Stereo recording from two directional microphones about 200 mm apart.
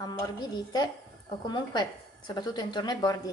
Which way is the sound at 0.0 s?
20° left (ahead or behind).